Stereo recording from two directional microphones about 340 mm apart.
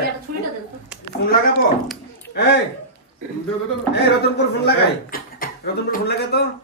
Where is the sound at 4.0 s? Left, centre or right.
Left.